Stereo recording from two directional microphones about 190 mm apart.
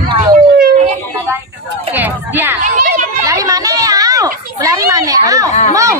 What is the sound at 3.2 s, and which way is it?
Speech, 15° right (ahead or behind).